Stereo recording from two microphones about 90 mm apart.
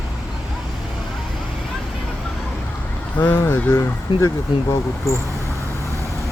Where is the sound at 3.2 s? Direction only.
25° left (ahead or behind).